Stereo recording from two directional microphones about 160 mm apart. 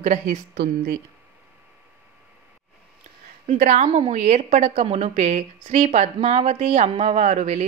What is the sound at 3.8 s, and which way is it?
Speech, 35° right (ahead or behind).